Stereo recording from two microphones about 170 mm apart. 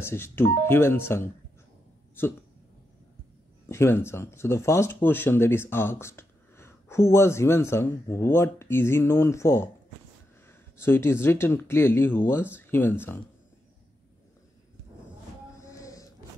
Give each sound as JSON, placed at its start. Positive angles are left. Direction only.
{"t": 0.0, "sound": "speech", "side_deg": 15}
{"t": 3.6, "sound": "speech", "side_deg": 15}
{"t": 10.8, "sound": "speech", "side_deg": 15}
{"t": 15.6, "sound": "a sound", "side_deg": 20}